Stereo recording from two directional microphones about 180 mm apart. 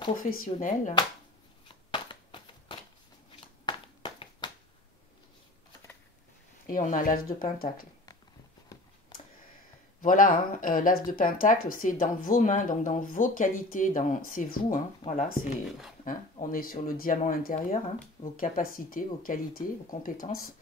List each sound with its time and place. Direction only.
0.2 s speech: 50° left (ahead or behind)
1.9 s a sound: 30° left (ahead or behind)
6.7 s speech: 45° left (ahead or behind)
10.0 s speech: 50° left (ahead or behind)